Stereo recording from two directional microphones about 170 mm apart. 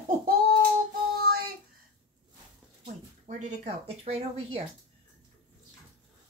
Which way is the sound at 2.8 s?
45° right (ahead or behind).